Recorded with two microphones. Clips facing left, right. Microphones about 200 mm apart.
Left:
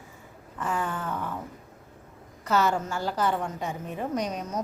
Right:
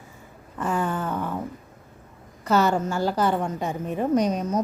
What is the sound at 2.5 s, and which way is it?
A woman's voice, 35° right (ahead or behind).